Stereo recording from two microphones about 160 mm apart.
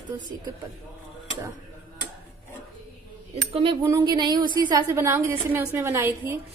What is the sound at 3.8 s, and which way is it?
A woman's voice, 25° right (ahead or behind).